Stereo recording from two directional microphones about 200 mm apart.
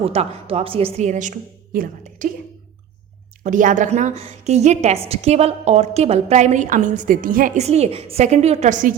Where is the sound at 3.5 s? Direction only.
40° right (ahead or behind).